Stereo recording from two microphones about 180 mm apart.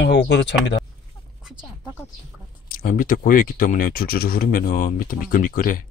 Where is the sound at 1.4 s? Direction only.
10° right (ahead or behind).